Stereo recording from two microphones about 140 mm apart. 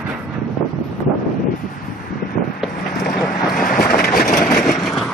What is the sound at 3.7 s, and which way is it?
Vehicle, 90° left.